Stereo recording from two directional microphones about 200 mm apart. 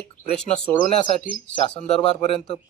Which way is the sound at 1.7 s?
5° left (ahead or behind).